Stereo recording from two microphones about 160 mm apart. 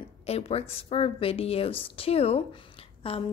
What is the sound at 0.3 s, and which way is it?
A woman's voice, 40° left (ahead or behind).